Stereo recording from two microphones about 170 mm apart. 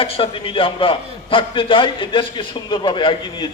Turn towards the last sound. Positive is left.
turn(degrees=30)  # may be behind; listen again after turning